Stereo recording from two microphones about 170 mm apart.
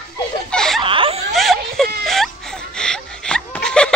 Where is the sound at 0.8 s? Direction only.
30° right (ahead or behind).